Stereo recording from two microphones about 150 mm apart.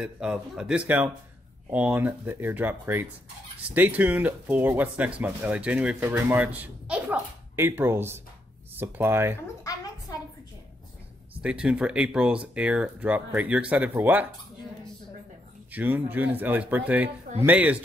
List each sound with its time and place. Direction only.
0.0 s speech: 5° right (ahead or behind)
9.6 s a sound: 25° left (ahead or behind)
11.4 s speech: 5° right (ahead or behind)
15.7 s speech: 10° right (ahead or behind)